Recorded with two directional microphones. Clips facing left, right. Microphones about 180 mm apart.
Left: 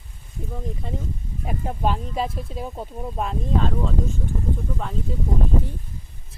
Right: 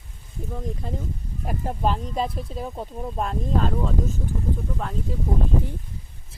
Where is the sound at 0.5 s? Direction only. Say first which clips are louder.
Even; centre (ahead or behind).